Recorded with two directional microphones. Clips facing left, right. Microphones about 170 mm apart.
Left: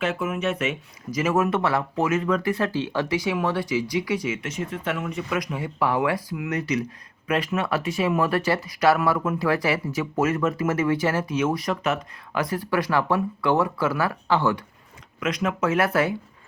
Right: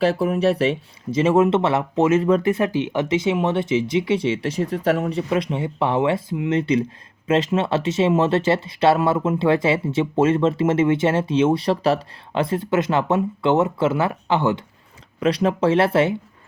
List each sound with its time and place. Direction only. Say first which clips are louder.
0.0 s speech: right 7 dB; 35° right (ahead or behind)
15.2 s speech: right 6 dB; 35° right (ahead or behind)